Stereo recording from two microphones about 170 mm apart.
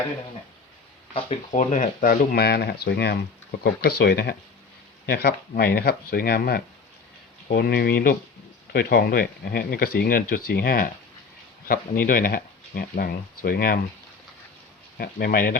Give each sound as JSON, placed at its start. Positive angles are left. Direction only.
{"t": 1.1, "sound": "speech", "side_deg": 45}
{"t": 14.9, "sound": "speech", "side_deg": 65}